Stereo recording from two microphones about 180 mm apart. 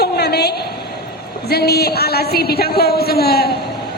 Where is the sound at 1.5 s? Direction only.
60° left (ahead or behind).